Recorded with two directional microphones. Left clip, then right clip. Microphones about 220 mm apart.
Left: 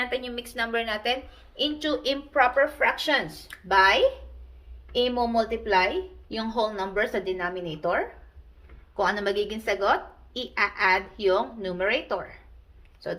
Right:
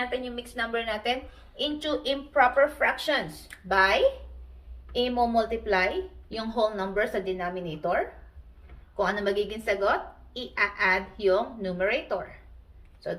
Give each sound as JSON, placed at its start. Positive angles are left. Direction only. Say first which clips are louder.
{"t": 0.0, "sound": "a woman's voice", "louder": "left 2 dB", "side_deg": 50}
{"t": 4.9, "sound": "a woman's voice", "louder": "left 1 dB", "side_deg": 35}
{"t": 9.0, "sound": "a woman's voice", "louder": "left 1 dB", "side_deg": 40}